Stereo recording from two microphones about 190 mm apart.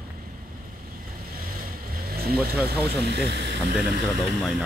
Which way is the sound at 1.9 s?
50° right (ahead or behind).